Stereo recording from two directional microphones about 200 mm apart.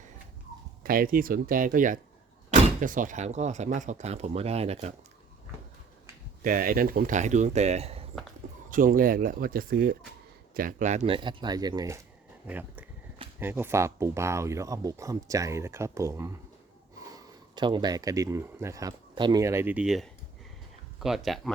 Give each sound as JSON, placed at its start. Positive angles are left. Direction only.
{"t": 0.8, "sound": "speech", "side_deg": -45}
{"t": 6.4, "sound": "speech", "side_deg": -45}
{"t": 8.7, "sound": "speech", "side_deg": -45}